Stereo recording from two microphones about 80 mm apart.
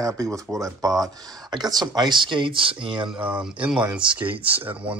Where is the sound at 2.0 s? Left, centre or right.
Right.